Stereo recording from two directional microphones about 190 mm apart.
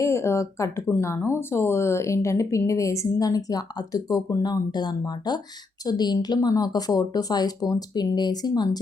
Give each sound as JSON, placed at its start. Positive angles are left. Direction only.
{"t": 0.0, "sound": "a woman's voice", "side_deg": 15}